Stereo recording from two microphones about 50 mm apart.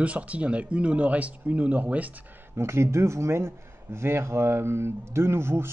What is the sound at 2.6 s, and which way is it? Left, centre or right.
Speech, right.